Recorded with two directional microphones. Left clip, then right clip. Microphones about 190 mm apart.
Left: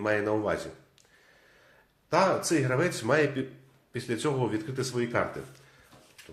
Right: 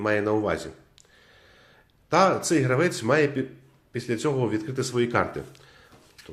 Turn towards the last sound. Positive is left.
turn(degrees=-30)  # may be behind; listen again after turning